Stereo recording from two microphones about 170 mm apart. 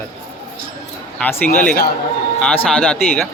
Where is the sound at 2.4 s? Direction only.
5° left (ahead or behind).